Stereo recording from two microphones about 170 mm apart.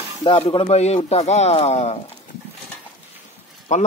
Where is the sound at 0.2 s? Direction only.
30° left (ahead or behind).